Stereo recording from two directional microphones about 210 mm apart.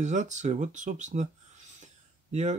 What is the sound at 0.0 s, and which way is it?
Speech, 35° right (ahead or behind).